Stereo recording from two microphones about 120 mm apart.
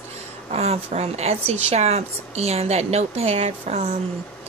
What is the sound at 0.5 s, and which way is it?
Speech, 65° right (ahead or behind).